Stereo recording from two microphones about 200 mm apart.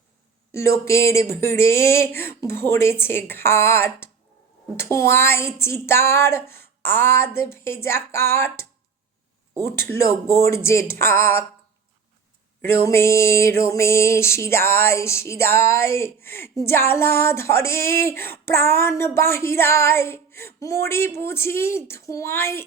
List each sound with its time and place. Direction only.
0.5 s music: 15° left (ahead or behind)
9.6 s music: 10° left (ahead or behind)
12.8 s music: 10° left (ahead or behind)